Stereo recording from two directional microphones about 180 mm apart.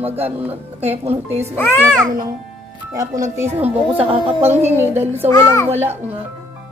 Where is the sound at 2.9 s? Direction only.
20° right (ahead or behind).